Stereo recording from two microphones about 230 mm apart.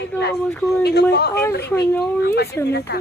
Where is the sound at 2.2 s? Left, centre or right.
Left.